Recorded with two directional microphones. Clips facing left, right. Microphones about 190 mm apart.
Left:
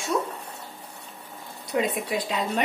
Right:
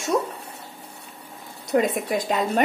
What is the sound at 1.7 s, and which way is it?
Speech, 50° right (ahead or behind).